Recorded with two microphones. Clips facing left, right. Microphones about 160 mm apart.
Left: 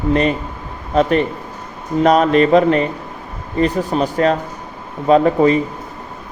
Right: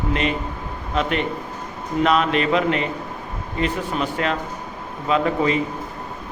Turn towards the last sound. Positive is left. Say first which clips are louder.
# left 8 dB
turn(degrees=40)  # may be behind; listen again after turning